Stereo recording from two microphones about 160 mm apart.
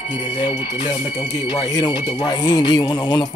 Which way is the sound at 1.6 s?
20° left (ahead or behind).